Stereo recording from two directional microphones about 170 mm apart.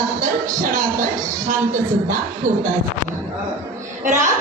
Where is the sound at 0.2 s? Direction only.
50° right (ahead or behind).